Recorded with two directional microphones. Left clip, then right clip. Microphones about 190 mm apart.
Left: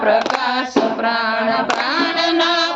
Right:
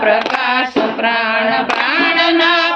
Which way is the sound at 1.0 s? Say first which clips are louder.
Right 3 dB; centre (ahead or behind).